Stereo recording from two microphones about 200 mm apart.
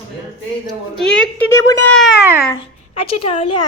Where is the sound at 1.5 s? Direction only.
15° left (ahead or behind).